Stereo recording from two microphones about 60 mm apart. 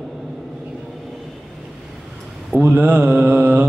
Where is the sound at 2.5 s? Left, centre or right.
Right.